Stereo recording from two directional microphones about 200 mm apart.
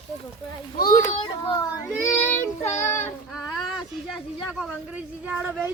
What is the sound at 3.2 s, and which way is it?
Speech, centre (ahead or behind).